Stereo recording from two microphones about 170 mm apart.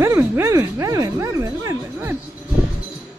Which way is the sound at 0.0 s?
15° right (ahead or behind).